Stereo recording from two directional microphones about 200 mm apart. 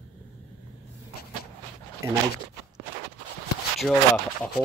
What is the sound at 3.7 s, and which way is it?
Speech, 5° left (ahead or behind).